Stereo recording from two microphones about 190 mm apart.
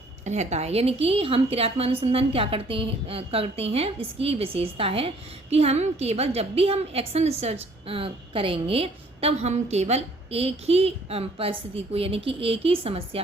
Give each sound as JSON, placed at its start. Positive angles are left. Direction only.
{"t": 0.3, "sound": "a woman's voice", "side_deg": -35}